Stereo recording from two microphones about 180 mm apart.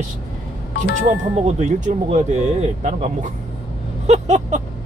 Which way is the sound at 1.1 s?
40° right (ahead or behind).